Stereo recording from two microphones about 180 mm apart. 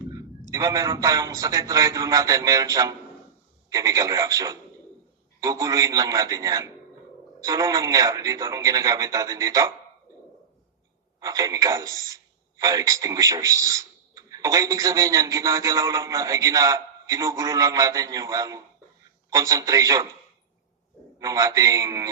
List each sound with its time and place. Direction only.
0.5 s a man's voice: 20° right (ahead or behind)
11.2 s a man's voice: 20° right (ahead or behind)
21.2 s a man's voice: 20° right (ahead or behind)